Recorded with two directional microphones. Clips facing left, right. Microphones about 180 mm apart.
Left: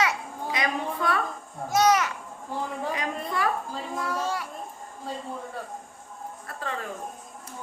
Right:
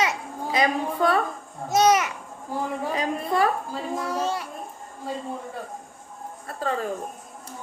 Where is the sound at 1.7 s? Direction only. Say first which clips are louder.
Right 2 dB; 20° right (ahead or behind).